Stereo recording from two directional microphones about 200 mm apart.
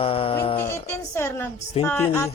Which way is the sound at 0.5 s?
15° left (ahead or behind).